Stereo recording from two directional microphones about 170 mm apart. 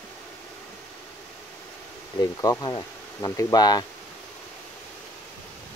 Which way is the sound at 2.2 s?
20° left (ahead or behind).